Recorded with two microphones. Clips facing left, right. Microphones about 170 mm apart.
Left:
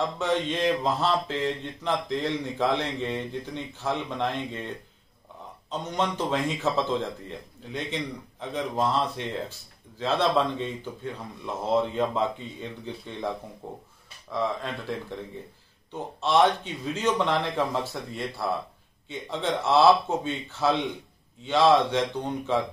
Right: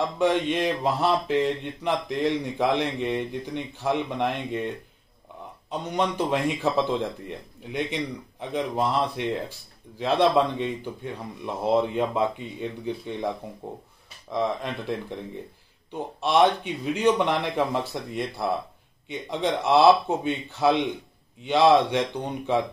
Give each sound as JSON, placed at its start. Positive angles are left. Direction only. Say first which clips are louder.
{"t": 0.2, "sound": "speech", "louder": "right 4 dB", "side_deg": -15}